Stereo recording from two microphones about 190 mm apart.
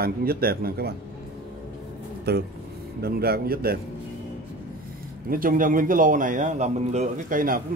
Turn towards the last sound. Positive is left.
turn(degrees=-45)  # may be behind; listen again after turning